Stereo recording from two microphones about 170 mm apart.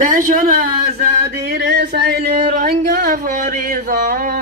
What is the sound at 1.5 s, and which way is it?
Speech, 70° right (ahead or behind).